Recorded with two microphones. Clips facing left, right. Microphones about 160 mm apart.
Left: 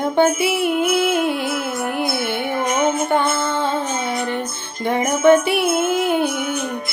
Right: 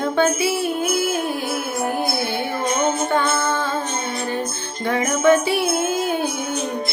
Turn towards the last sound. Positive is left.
turn(degrees=65)  # may be behind; listen again after turning